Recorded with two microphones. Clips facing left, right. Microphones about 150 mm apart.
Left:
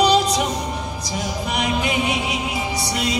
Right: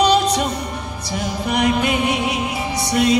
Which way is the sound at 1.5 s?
60° right (ahead or behind).